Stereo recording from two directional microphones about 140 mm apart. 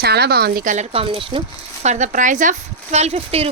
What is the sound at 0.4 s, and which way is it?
Speech, 80° right.